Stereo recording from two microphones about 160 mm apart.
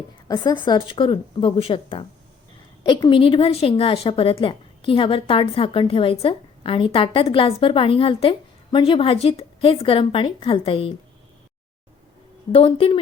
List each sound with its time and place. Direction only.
0.3 s a woman's voice: 30° left (ahead or behind)
12.5 s a woman's voice: 35° left (ahead or behind)